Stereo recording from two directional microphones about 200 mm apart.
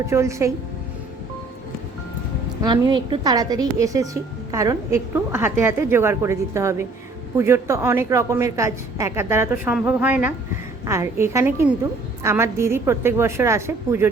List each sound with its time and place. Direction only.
0.1 s a woman's voice: 15° right (ahead or behind)
2.6 s a woman's voice: 20° right (ahead or behind)